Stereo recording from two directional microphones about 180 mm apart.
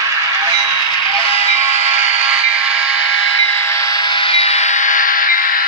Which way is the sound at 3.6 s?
20° left (ahead or behind).